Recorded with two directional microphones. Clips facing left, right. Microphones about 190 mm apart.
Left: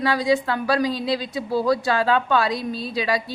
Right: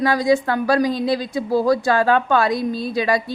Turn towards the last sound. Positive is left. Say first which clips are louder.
# right 4 dB
turn(degrees=-50)  # may be behind; listen again after turning